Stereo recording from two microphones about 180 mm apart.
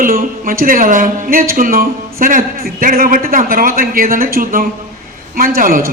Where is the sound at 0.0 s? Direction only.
50° right (ahead or behind).